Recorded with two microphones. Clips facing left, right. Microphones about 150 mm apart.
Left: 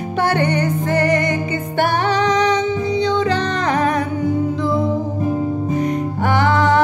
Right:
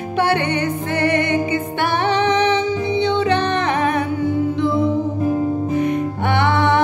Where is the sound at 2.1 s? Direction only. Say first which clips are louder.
Even; 25° right (ahead or behind).